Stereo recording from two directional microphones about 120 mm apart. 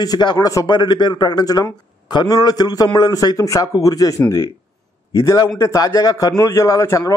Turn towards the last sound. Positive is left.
turn(degrees=25)  # may be behind; listen again after turning